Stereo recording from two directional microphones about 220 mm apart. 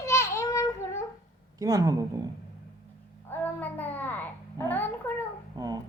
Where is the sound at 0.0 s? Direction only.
15° left (ahead or behind).